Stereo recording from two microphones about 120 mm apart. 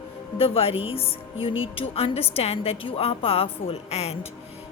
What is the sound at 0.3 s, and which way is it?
A woman's voice, 50° left (ahead or behind).